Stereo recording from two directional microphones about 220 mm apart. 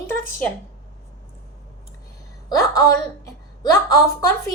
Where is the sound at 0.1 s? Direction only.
5° left (ahead or behind).